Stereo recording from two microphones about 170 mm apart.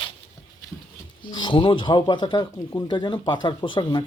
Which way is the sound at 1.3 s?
30° left (ahead or behind).